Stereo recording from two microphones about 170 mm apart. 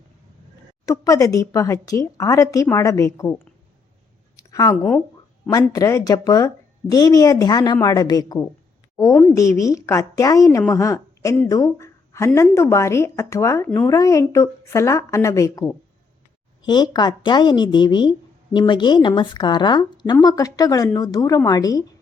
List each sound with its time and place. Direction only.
0.9 s speech: 20° left (ahead or behind)
4.4 s a sound: 20° left (ahead or behind)
4.8 s speech: 5° left (ahead or behind)
5.5 s a woman's voice: 20° left (ahead or behind)